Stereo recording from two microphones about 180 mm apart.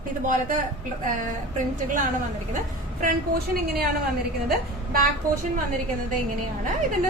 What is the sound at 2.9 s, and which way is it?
Speech, 50° right (ahead or behind).